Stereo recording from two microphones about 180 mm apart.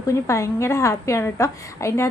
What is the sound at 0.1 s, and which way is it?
A woman's voice, 15° left (ahead or behind).